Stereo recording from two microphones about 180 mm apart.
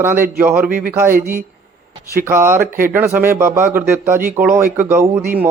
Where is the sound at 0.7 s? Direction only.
50° right (ahead or behind).